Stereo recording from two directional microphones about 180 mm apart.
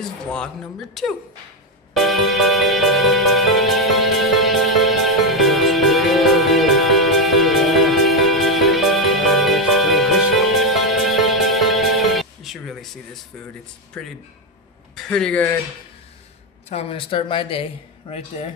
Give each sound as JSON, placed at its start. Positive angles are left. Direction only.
{"t": 0.3, "sound": "speech", "side_deg": 5}
{"t": 2.0, "sound": "music", "side_deg": 0}
{"t": 14.0, "sound": "speech", "side_deg": 5}
{"t": 16.6, "sound": "speech", "side_deg": 35}